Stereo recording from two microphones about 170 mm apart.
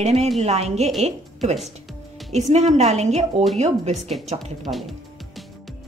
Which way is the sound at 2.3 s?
40° right (ahead or behind).